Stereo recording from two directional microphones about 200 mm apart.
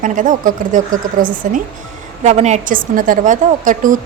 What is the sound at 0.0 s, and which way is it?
A woman's voice, 40° right (ahead or behind).